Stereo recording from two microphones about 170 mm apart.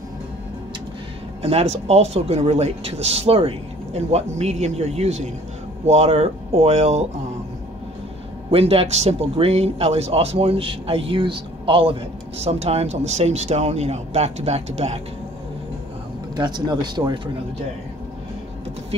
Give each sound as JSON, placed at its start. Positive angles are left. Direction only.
{"t": 1.4, "sound": "speech", "side_deg": -35}
{"t": 8.5, "sound": "speech", "side_deg": -35}
{"t": 16.3, "sound": "speech", "side_deg": -25}